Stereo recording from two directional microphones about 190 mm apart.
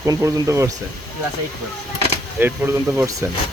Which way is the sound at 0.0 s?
15° right (ahead or behind).